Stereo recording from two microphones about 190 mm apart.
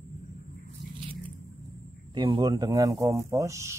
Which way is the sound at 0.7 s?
30° right (ahead or behind).